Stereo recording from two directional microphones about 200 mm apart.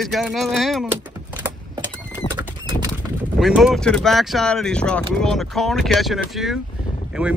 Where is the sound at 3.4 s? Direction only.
Centre (ahead or behind).